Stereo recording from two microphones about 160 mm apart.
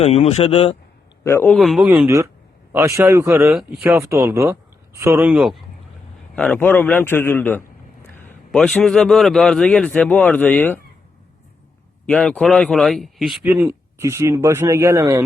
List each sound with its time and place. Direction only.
0.0 s speech: 40° left (ahead or behind)
1.2 s speech: 15° left (ahead or behind)
1.5 s a man's voice: centre (ahead or behind)
1.9 s speech: 15° right (ahead or behind)
3.6 s a man's voice: 5° right (ahead or behind)
3.8 s speech: 15° right (ahead or behind)
6.3 s a man's voice: 5° left (ahead or behind)
12.0 s a man's voice: 5° left (ahead or behind)
13.4 s speech: 15° right (ahead or behind)